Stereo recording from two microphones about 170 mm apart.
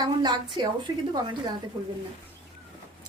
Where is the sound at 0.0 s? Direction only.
25° right (ahead or behind).